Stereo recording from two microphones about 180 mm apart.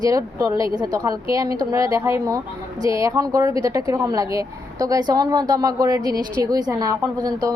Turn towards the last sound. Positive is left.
turn(degrees=-20)  # may be behind; listen again after turning